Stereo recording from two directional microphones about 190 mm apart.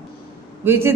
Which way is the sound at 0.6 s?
10° right (ahead or behind).